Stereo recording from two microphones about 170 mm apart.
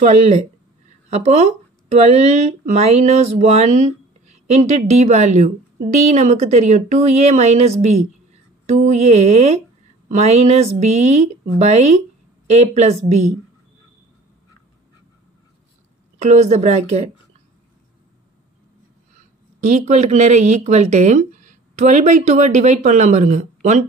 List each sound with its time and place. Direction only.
0.0 s speech: 40° right (ahead or behind)
16.2 s a woman's voice: 40° right (ahead or behind)
19.6 s speech: 45° right (ahead or behind)